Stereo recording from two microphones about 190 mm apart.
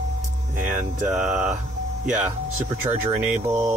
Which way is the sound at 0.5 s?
10° right (ahead or behind).